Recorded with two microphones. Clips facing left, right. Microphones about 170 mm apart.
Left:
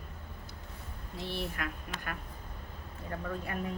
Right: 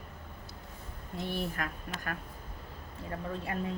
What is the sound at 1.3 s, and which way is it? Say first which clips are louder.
Speech: right 1 dB; 40° right (ahead or behind).